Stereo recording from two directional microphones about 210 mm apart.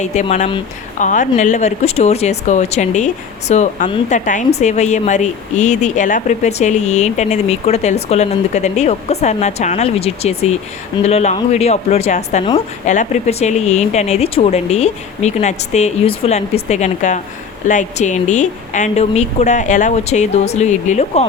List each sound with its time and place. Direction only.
0.0 s speech: 35° left (ahead or behind)